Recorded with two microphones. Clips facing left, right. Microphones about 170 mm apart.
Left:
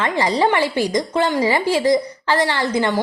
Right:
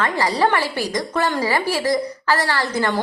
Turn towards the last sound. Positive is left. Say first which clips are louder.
# left 2 dB
turn(degrees=20)  # may be behind; listen again after turning